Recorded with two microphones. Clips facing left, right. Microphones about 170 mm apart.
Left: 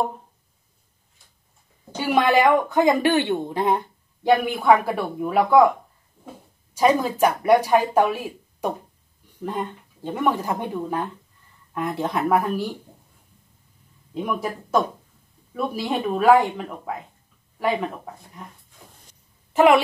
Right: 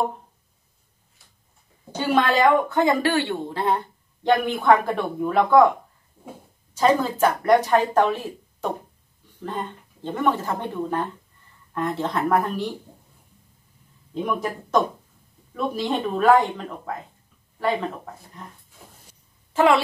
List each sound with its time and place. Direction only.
2.0 s speech: 10° left (ahead or behind)
6.7 s speech: 10° left (ahead or behind)
14.2 s speech: 5° left (ahead or behind)
19.5 s a woman's voice: 20° left (ahead or behind)